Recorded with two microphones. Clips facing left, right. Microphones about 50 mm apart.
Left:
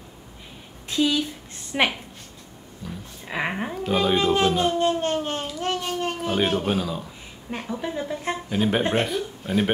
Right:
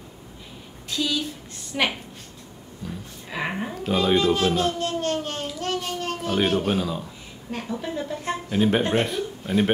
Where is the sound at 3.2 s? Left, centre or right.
Left.